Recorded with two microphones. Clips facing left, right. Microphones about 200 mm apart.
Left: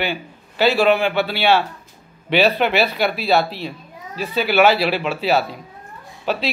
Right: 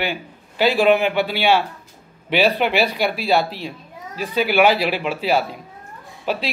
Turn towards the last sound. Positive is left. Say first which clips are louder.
# left 1 dB
turn(degrees=-10)  # may be behind; listen again after turning